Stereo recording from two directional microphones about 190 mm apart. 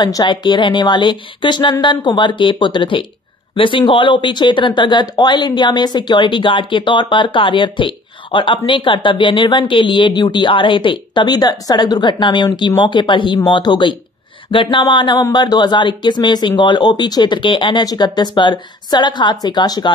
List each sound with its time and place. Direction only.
0.0 s speech: 20° left (ahead or behind)